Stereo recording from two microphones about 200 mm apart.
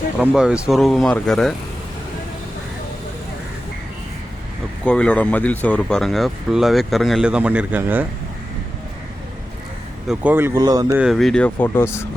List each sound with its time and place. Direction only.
0.2 s speech: 5° right (ahead or behind)
4.8 s speech: 5° left (ahead or behind)
10.1 s speech: 10° right (ahead or behind)
10.9 s speech: 5° right (ahead or behind)